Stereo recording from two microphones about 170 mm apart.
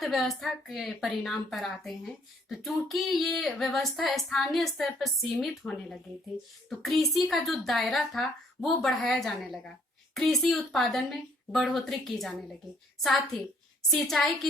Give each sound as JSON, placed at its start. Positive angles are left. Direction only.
{"t": 0.0, "sound": "a woman's voice", "side_deg": 0}